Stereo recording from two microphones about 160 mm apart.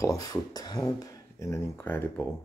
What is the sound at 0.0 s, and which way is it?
Speech, 20° left (ahead or behind).